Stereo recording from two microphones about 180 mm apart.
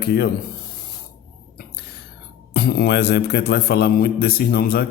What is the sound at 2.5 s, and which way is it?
A man's voice, 60° left (ahead or behind).